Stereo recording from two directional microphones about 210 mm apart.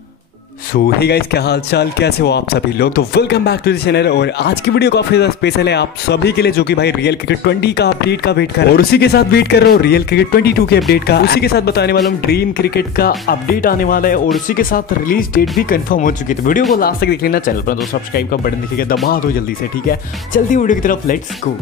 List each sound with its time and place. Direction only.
0.7 s speech: 50° left (ahead or behind)
20.5 s speech: 40° left (ahead or behind)